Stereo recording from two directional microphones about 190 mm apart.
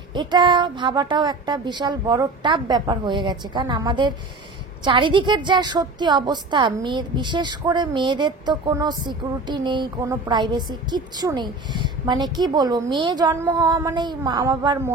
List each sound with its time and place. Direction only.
0.1 s a woman's voice: 25° right (ahead or behind)